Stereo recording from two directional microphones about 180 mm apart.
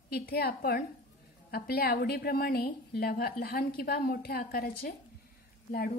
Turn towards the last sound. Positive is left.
turn(degrees=60)  # may be behind; listen again after turning